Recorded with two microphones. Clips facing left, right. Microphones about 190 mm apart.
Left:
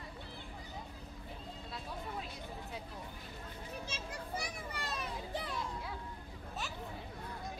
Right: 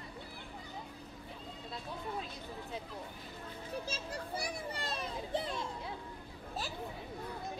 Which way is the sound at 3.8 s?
35° right (ahead or behind).